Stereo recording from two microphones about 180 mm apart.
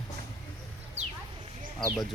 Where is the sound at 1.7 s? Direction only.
Centre (ahead or behind).